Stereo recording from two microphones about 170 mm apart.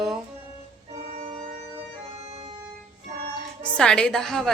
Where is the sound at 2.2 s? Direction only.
40° right (ahead or behind).